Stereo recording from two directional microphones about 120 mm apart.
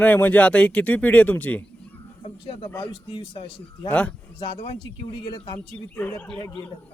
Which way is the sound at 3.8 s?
10° left (ahead or behind).